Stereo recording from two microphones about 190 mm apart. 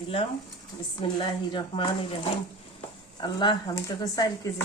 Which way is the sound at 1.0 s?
25° left (ahead or behind).